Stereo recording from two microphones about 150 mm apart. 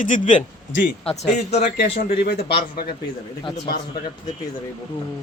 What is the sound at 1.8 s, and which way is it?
Speech, 90° left.